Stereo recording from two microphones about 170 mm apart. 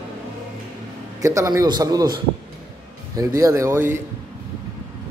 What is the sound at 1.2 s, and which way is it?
A man's voice, 20° right (ahead or behind).